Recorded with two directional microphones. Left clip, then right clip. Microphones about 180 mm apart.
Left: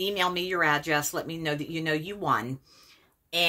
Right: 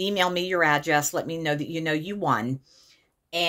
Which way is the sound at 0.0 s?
35° right (ahead or behind).